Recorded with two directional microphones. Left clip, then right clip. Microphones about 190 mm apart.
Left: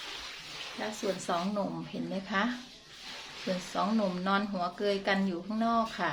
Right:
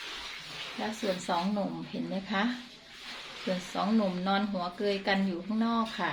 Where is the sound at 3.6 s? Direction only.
Centre (ahead or behind).